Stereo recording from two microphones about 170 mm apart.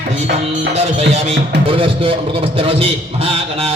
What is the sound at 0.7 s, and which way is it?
Music, 40° right (ahead or behind).